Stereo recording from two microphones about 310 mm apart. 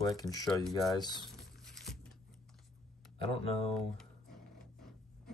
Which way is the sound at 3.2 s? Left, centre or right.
Centre.